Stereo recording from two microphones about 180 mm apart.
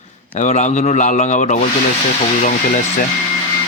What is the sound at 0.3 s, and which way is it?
A man's voice, 40° left (ahead or behind).